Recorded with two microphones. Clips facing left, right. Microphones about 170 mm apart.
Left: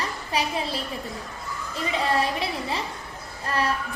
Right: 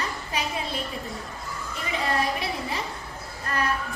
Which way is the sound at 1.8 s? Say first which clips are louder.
Left 3 dB; 30° left (ahead or behind).